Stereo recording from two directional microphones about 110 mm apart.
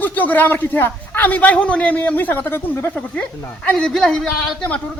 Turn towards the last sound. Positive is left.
turn(degrees=5)  # may be behind; listen again after turning